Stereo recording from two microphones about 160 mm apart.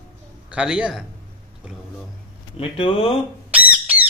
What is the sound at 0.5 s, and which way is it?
Speech, 5° right (ahead or behind).